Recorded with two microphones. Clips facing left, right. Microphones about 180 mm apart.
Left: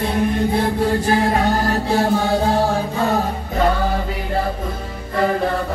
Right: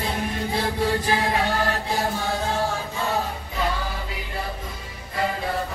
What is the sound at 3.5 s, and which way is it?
Music, 50° left (ahead or behind).